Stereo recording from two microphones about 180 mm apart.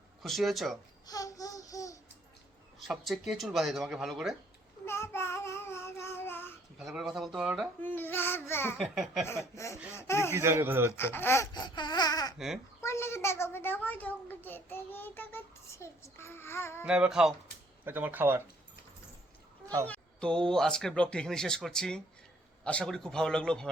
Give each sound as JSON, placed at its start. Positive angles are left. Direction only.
{"t": 0.2, "sound": "speech", "side_deg": 0}
{"t": 1.0, "sound": "babbling", "side_deg": 20}
{"t": 2.8, "sound": "speech", "side_deg": 0}
{"t": 4.9, "sound": "child singing", "side_deg": 15}
{"t": 6.7, "sound": "speech", "side_deg": 0}
{"t": 7.8, "sound": "a child's voice", "side_deg": 10}
{"t": 8.8, "sound": "speech", "side_deg": 0}
{"t": 9.2, "sound": "a child's voice", "side_deg": 15}
{"t": 10.3, "sound": "speech", "side_deg": -15}
{"t": 10.9, "sound": "a child's voice", "side_deg": 10}
{"t": 16.8, "sound": "speech", "side_deg": -5}
{"t": 19.6, "sound": "speech", "side_deg": -15}
{"t": 19.9, "sound": "speech", "side_deg": 5}